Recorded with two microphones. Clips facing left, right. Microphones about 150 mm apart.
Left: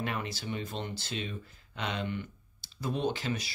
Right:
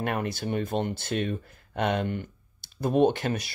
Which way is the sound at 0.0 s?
55° right (ahead or behind).